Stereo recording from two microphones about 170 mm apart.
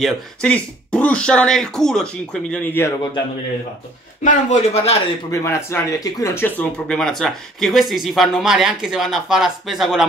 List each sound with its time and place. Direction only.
0.0 s speech: 5° left (ahead or behind)
4.2 s a man's voice: 45° left (ahead or behind)
5.3 s speech: 15° left (ahead or behind); by 10.0 s centre (ahead or behind)